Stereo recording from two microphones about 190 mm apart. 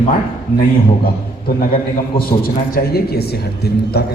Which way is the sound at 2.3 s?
55° left (ahead or behind).